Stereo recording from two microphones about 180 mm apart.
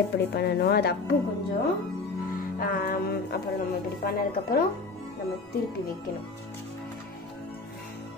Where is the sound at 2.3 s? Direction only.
55° left (ahead or behind).